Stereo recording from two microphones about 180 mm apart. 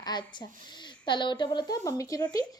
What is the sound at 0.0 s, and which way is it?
A woman's voice, 25° left (ahead or behind).